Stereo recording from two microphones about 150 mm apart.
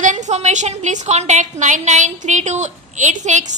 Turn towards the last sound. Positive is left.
turn(degrees=-55)  # may be behind; listen again after turning